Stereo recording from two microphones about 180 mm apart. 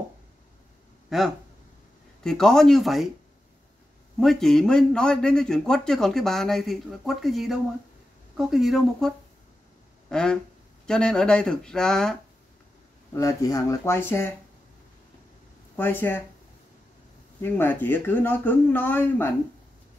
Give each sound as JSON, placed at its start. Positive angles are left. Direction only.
{"t": 1.1, "sound": "a man's voice", "side_deg": 0}
{"t": 4.2, "sound": "a man's voice", "side_deg": 0}
{"t": 13.1, "sound": "speech", "side_deg": 15}
{"t": 15.7, "sound": "speech", "side_deg": 10}
{"t": 17.4, "sound": "speech", "side_deg": 10}